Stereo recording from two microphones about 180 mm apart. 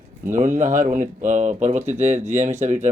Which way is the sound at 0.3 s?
45° right (ahead or behind).